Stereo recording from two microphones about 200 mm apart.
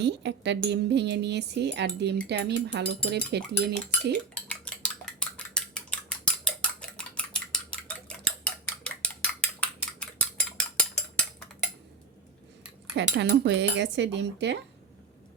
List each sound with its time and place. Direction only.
0.0 s speech: 60° right (ahead or behind)
4.4 s cutlery: 5° left (ahead or behind)
5.7 s scissors: 5° left (ahead or behind)
6.9 s cutlery: 5° left (ahead or behind)
12.9 s speech: 60° right (ahead or behind)